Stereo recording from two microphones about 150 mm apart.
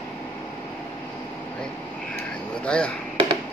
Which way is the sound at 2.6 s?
5° left (ahead or behind).